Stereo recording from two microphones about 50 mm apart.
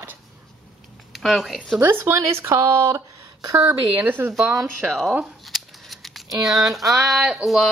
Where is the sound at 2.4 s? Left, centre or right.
Right.